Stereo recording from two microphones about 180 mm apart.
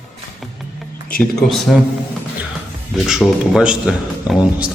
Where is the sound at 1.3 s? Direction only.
Centre (ahead or behind).